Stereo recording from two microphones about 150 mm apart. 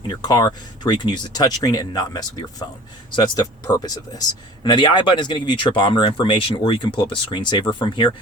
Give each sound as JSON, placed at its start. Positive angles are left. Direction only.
{"t": 0.1, "sound": "speech", "side_deg": 25}